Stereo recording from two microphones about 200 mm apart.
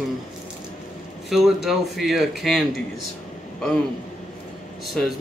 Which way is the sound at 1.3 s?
Centre (ahead or behind).